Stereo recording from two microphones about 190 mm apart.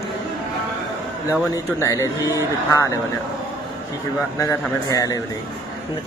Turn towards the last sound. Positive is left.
turn(degrees=20)  # may be behind; listen again after turning